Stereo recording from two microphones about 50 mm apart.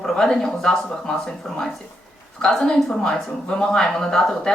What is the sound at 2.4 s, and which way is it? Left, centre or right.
Speech, centre.